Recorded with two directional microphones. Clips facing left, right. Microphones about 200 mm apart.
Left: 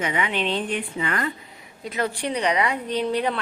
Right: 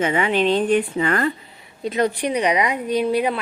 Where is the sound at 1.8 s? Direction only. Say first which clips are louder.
Right 6 dB; 20° right (ahead or behind).